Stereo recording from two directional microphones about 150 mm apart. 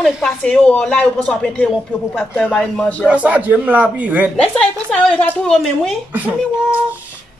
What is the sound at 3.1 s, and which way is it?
A man's voice, 10° right (ahead or behind).